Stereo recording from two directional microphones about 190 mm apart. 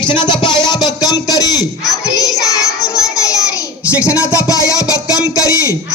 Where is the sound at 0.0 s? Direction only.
25° left (ahead or behind).